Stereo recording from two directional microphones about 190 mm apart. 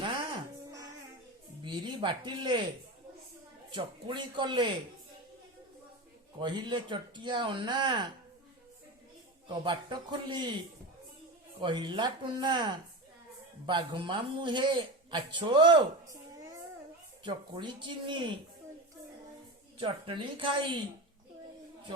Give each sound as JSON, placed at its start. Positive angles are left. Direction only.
{"t": 1.6, "sound": "speech", "side_deg": -25}
{"t": 3.7, "sound": "speech", "side_deg": -25}
{"t": 6.4, "sound": "speech", "side_deg": -25}
{"t": 9.5, "sound": "speech", "side_deg": -25}
{"t": 11.6, "sound": "a man's voice", "side_deg": -25}
{"t": 19.8, "sound": "speech", "side_deg": -25}